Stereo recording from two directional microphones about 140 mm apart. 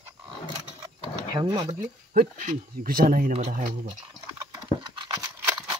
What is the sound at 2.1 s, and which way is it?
Speech, 65° right (ahead or behind).